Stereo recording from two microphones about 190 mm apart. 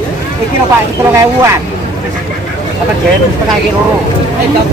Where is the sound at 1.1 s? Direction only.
15° right (ahead or behind).